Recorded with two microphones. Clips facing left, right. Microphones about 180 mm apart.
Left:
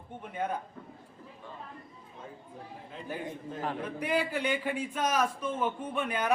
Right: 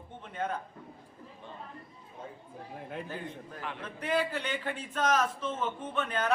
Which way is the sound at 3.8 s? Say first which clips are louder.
Right 2 dB; 10° left (ahead or behind).